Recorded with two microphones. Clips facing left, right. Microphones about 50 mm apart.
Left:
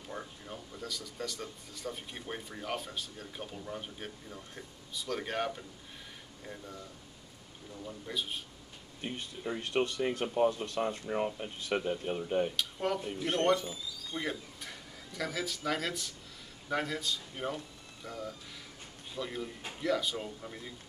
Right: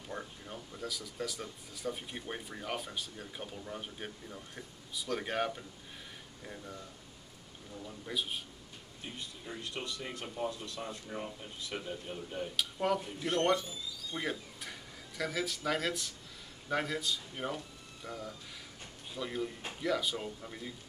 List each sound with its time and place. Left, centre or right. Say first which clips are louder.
0.1 s speech: even; centre
8.1 s speech: right 1 dB; centre
9.0 s speech: left 7 dB; left
12.5 s speech: right 1 dB; centre
14.1 s speech: left 1 dB; centre